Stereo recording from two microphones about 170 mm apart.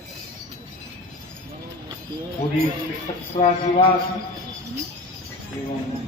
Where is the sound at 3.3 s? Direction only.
40° left (ahead or behind).